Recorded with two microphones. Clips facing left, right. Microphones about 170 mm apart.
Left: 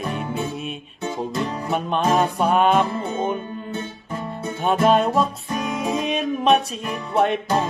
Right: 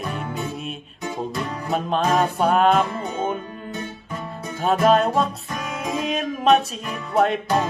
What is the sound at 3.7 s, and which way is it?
Music, 30° left (ahead or behind).